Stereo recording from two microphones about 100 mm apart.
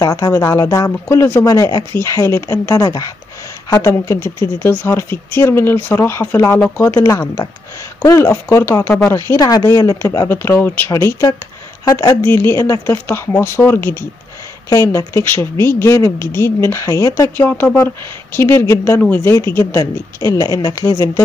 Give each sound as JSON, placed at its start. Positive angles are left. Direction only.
{"t": 0.0, "sound": "speech", "side_deg": 35}
{"t": 1.0, "sound": "speech", "side_deg": 25}
{"t": 1.5, "sound": "speech", "side_deg": 40}
{"t": 9.4, "sound": "speech", "side_deg": 35}
{"t": 10.2, "sound": "speech", "side_deg": 20}
{"t": 12.3, "sound": "speech", "side_deg": 25}
{"t": 17.4, "sound": "speech", "side_deg": 20}